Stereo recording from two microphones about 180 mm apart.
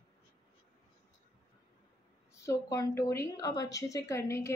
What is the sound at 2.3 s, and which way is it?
A woman's voice, 15° left (ahead or behind).